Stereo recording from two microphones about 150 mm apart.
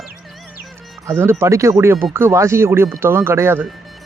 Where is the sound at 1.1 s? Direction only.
15° right (ahead or behind).